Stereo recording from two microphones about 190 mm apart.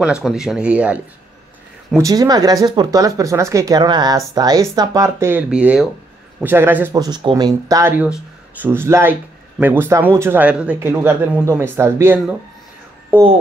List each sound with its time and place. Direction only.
0.0 s speech: 5° right (ahead or behind)
2.0 s speech: 20° right (ahead or behind)